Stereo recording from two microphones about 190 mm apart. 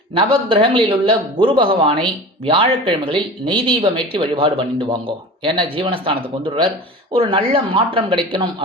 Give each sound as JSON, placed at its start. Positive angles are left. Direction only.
{"t": 0.1, "sound": "a man's voice", "side_deg": -25}